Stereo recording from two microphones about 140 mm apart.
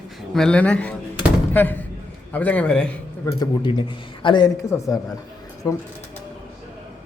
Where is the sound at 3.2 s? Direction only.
20° left (ahead or behind).